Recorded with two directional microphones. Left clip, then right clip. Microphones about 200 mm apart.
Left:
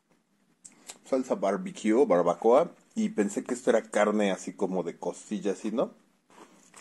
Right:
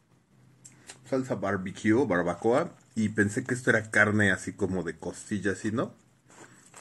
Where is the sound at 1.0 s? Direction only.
Centre (ahead or behind).